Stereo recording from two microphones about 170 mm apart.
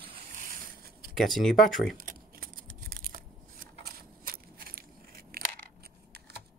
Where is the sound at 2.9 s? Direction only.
55° right (ahead or behind).